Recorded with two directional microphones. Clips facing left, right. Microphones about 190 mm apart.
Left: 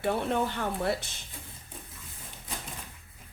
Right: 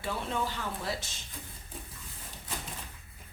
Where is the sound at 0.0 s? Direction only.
60° left (ahead or behind).